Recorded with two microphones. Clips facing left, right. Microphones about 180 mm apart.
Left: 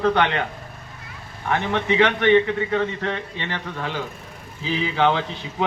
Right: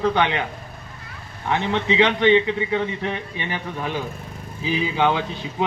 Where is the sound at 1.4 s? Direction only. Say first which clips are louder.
Even; 20° right (ahead or behind).